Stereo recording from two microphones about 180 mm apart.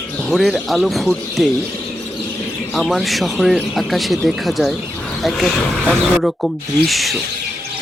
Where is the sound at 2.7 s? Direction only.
Centre (ahead or behind).